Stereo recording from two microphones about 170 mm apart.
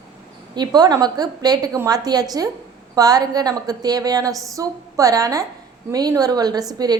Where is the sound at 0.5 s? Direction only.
25° right (ahead or behind).